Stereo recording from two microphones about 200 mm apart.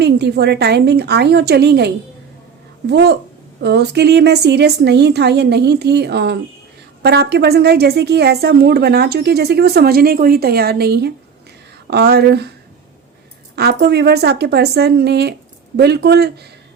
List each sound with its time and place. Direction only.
0.0 s a woman's voice: 55° right (ahead or behind)
13.6 s a woman's voice: 55° right (ahead or behind)